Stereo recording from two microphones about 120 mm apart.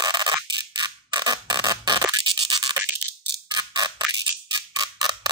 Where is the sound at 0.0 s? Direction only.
35° right (ahead or behind).